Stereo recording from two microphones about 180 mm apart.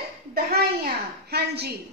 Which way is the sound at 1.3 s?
65° right (ahead or behind).